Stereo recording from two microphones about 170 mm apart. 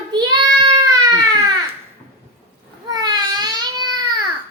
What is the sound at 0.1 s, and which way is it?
Child singing, 25° right (ahead or behind).